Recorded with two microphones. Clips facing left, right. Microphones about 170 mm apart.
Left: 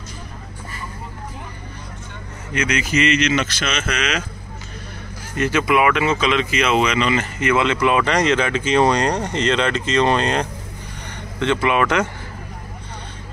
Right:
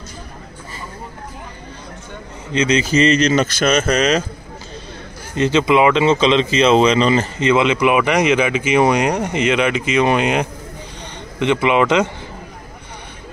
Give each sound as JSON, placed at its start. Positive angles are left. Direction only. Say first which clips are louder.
{"t": 2.5, "sound": "speech", "louder": "right 5 dB", "side_deg": -25}
{"t": 5.3, "sound": "speech", "louder": "right 4 dB", "side_deg": -20}
{"t": 7.4, "sound": "speech", "louder": "right 3 dB", "side_deg": -15}